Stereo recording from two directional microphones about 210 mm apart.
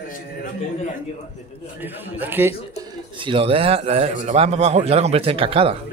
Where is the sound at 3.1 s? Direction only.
25° right (ahead or behind).